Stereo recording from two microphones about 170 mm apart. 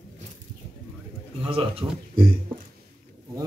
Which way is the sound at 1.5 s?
30° right (ahead or behind).